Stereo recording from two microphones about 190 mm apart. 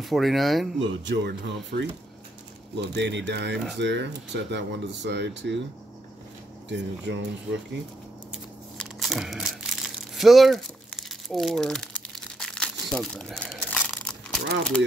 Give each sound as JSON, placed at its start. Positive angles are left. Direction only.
{"t": 0.0, "sound": "speech", "side_deg": 0}
{"t": 0.7, "sound": "speech", "side_deg": -70}
{"t": 6.7, "sound": "speech", "side_deg": -70}
{"t": 8.7, "sound": "crumpling", "side_deg": 0}